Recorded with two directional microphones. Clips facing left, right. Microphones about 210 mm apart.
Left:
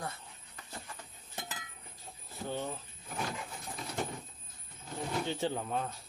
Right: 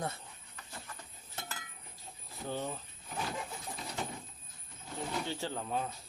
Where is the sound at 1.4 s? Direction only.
15° left (ahead or behind).